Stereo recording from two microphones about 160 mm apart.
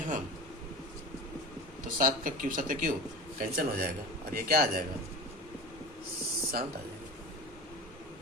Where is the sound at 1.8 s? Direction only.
55° right (ahead or behind).